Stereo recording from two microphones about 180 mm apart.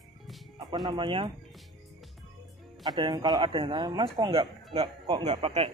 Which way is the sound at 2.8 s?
20° right (ahead or behind).